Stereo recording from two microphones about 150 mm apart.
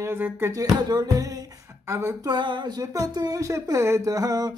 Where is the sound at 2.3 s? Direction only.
30° right (ahead or behind).